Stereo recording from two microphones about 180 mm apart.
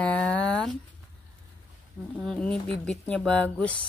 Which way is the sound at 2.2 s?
5° left (ahead or behind).